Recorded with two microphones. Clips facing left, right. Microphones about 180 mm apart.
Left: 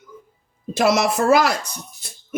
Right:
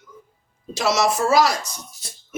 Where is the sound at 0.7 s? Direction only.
55° left (ahead or behind).